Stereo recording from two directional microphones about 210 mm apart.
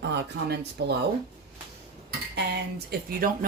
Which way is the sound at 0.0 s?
50° right (ahead or behind).